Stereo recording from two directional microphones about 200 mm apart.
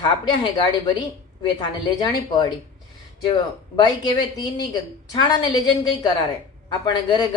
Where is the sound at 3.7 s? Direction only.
20° left (ahead or behind).